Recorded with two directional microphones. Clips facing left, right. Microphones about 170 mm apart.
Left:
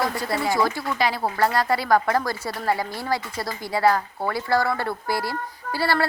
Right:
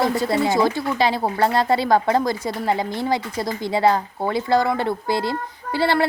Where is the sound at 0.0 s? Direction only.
25° right (ahead or behind).